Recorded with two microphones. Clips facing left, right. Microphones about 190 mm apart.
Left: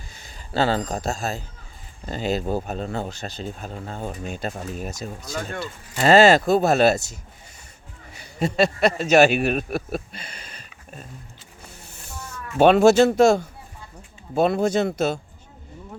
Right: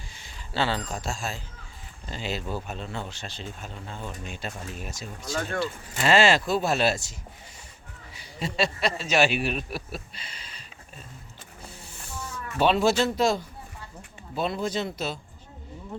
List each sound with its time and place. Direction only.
0.3 s a man's voice: 45° left (ahead or behind)
8.1 s speech: 50° left (ahead or behind)
12.5 s speech: 55° left (ahead or behind)